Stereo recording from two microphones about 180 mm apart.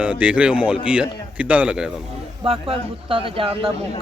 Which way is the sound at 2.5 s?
30° right (ahead or behind).